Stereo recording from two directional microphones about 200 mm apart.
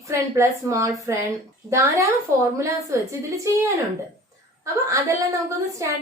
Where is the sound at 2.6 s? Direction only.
15° right (ahead or behind).